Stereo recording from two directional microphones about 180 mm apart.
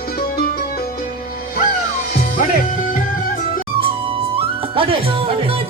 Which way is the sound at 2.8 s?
50° left (ahead or behind).